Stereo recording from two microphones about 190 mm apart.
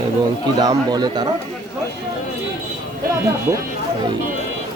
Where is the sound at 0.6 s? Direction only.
20° right (ahead or behind).